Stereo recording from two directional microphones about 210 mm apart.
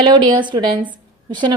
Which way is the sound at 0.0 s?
20° right (ahead or behind).